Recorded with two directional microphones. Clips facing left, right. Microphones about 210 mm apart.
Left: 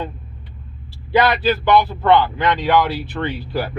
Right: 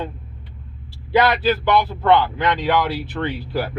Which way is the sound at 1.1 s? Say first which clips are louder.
Left 1 dB; 5° right (ahead or behind).